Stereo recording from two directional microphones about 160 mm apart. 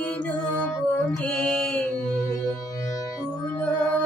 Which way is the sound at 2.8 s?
20° left (ahead or behind).